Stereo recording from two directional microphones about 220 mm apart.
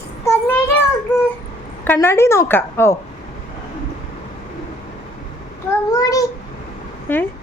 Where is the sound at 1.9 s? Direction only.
10° left (ahead or behind).